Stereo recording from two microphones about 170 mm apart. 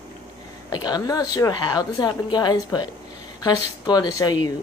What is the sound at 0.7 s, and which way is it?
Speech, 25° left (ahead or behind).